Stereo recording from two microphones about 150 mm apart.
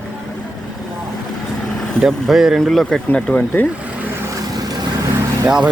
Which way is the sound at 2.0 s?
Centre (ahead or behind).